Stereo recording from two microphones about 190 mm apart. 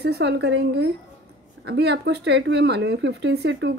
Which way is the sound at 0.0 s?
60° right (ahead or behind).